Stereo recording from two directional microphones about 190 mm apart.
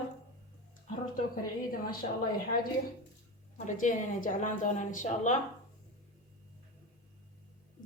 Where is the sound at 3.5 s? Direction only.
40° left (ahead or behind).